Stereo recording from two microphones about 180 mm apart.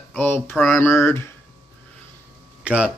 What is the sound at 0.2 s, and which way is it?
Speech, 10° left (ahead or behind).